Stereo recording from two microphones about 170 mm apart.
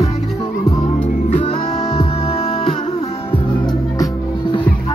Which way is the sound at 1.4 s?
35° left (ahead or behind).